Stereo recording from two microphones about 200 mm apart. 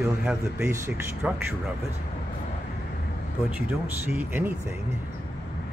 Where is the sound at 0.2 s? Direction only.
10° right (ahead or behind).